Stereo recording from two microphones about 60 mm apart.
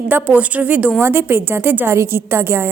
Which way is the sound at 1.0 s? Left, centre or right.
Right.